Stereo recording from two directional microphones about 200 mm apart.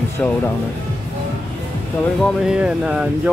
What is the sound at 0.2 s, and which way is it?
Speech, 5° left (ahead or behind).